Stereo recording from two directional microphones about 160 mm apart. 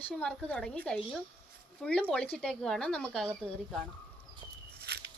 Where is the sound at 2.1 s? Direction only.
5° left (ahead or behind).